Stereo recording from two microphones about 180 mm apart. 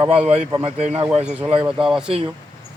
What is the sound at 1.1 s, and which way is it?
A man's voice, 5° right (ahead or behind).